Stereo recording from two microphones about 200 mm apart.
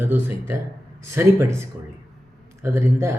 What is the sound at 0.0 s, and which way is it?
A man's voice, 10° right (ahead or behind).